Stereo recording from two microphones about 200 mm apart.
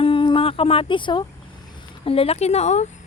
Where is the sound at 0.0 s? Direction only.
25° left (ahead or behind).